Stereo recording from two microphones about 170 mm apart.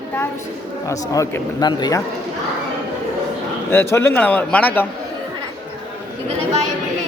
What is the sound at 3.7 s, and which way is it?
A man's voice, 15° left (ahead or behind).